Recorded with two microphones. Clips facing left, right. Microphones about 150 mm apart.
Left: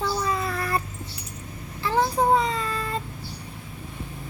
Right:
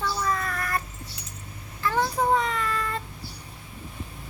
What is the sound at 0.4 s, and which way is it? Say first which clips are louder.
Child singing: left 3 dB; 30° left (ahead or behind).